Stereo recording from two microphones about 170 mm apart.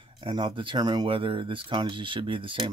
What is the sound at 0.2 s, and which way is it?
Speech, 30° right (ahead or behind).